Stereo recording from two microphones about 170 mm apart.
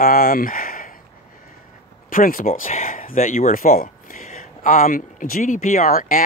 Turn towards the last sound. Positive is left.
turn(degrees=55)  # may be behind; listen again after turning